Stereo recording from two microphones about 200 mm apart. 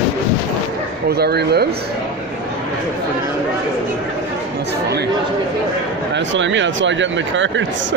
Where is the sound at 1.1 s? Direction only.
55° right (ahead or behind).